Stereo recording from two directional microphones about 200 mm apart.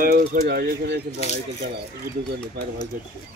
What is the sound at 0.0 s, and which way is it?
Speech, 45° right (ahead or behind).